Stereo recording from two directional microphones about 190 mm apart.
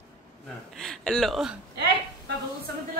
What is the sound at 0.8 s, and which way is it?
Speech, 5° left (ahead or behind).